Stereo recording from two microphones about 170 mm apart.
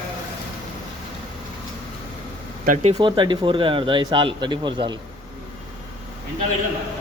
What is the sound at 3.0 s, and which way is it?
Speech, 30° right (ahead or behind).